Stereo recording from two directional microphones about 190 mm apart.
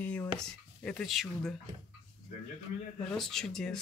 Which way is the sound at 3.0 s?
5° left (ahead or behind).